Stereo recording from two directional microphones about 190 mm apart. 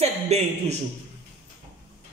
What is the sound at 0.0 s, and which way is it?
Speech, 35° right (ahead or behind).